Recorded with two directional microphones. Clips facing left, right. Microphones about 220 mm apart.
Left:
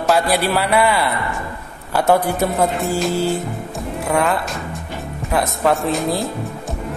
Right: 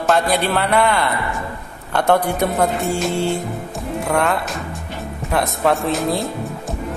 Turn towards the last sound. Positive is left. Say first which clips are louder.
# even
turn(degrees=0)  # may be behind; listen again after turning